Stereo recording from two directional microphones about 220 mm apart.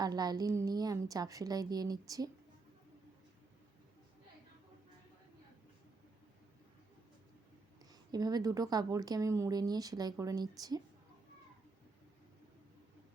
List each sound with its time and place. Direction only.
0.0 s speech: 20° right (ahead or behind)
8.1 s speech: 15° right (ahead or behind)